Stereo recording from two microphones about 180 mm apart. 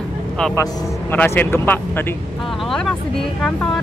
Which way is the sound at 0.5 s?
20° left (ahead or behind).